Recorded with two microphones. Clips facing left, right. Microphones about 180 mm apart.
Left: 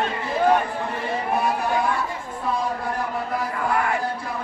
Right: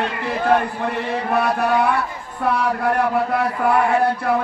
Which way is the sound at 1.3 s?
65° right (ahead or behind).